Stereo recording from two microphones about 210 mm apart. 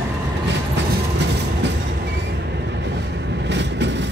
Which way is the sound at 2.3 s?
55° right (ahead or behind).